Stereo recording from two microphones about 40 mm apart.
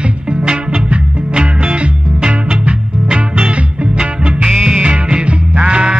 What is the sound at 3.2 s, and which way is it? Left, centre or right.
Music, right.